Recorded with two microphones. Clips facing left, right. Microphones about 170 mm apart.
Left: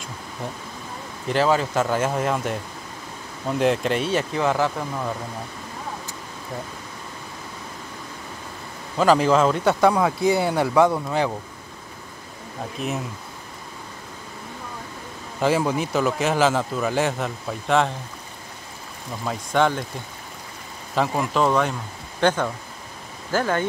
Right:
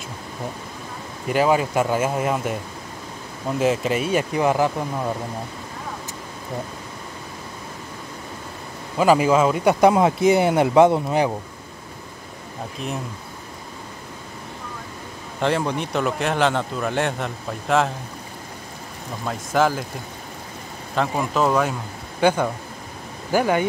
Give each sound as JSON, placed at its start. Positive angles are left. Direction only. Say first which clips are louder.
{"t": 1.3, "sound": "speech", "louder": "right 1 dB", "side_deg": -10}
{"t": 8.9, "sound": "speech", "louder": "right 1 dB", "side_deg": -10}
{"t": 9.8, "sound": "speech", "louder": "right 3 dB", "side_deg": -20}
{"t": 12.8, "sound": "a man's voice", "louder": "left 2 dB", "side_deg": 0}
{"t": 15.4, "sound": "a man's voice", "louder": "left 1 dB", "side_deg": 5}
{"t": 19.2, "sound": "a man's voice", "louder": "right 1 dB", "side_deg": -5}
{"t": 20.9, "sound": "a man's voice", "louder": "even", "side_deg": 0}